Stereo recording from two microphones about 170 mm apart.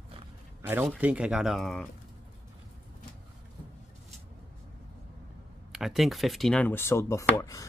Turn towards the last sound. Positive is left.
turn(degrees=20)  # may be behind; listen again after turning